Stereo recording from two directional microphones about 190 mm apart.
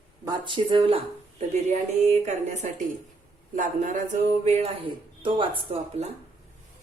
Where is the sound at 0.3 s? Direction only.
25° right (ahead or behind).